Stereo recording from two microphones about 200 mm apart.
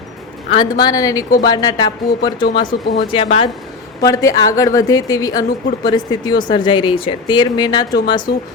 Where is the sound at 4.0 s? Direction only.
15° left (ahead or behind).